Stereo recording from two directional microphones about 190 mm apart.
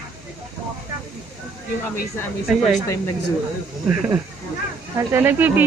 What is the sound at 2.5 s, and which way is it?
Speech, centre (ahead or behind).